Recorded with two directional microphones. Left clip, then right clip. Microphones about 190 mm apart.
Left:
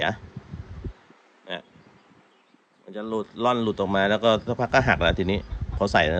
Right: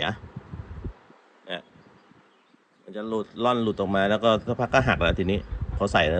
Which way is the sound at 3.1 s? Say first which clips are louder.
Left 1 dB; centre (ahead or behind).